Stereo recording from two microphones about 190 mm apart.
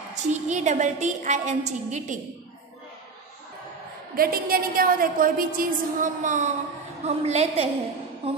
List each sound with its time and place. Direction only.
0.1 s a woman's voice: 40° right (ahead or behind)
4.2 s a woman's voice: 50° right (ahead or behind); by 7.6 s 35° right (ahead or behind)
8.2 s a sound: 30° right (ahead or behind)